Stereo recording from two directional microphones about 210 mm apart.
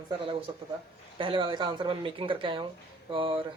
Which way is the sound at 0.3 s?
25° right (ahead or behind).